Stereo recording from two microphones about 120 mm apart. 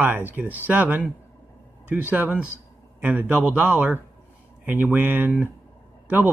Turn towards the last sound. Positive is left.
turn(degrees=-15)  # may be behind; listen again after turning